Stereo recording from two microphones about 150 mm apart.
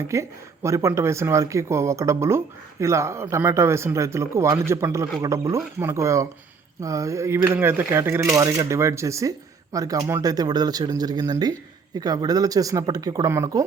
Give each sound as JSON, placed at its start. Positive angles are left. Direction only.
{"t": 0.1, "sound": "speech", "side_deg": -20}